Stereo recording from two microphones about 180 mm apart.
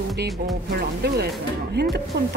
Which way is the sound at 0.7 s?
65° right (ahead or behind).